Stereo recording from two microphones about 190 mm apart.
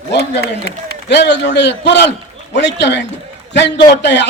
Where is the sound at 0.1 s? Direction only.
60° left (ahead or behind).